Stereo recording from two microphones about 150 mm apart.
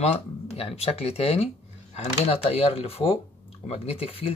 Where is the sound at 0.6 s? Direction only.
40° left (ahead or behind).